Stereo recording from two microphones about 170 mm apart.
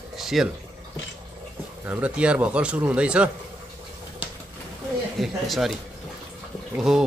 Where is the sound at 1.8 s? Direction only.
10° right (ahead or behind).